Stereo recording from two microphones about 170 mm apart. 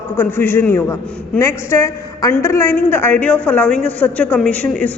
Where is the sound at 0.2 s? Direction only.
10° left (ahead or behind).